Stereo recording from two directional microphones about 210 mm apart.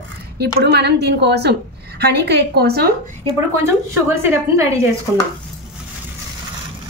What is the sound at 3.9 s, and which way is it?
Speech, 10° right (ahead or behind).